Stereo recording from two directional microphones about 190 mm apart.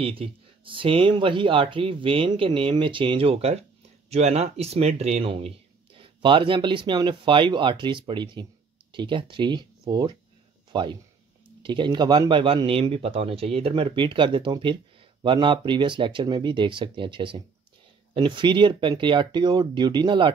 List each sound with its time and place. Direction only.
0.0 s speech: 30° right (ahead or behind)